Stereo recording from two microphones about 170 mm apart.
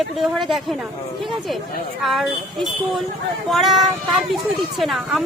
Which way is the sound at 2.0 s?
Centre (ahead or behind).